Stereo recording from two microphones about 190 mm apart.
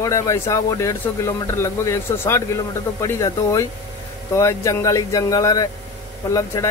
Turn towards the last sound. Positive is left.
turn(degrees=15)  # may be behind; listen again after turning